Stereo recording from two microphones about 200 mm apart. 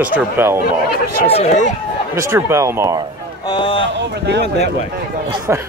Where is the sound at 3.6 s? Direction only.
25° left (ahead or behind).